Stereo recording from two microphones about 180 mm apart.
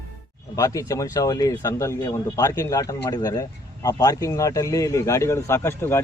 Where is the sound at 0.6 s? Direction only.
20° left (ahead or behind).